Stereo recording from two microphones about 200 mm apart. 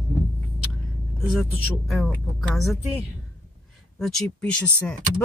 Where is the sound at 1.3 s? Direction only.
Centre (ahead or behind).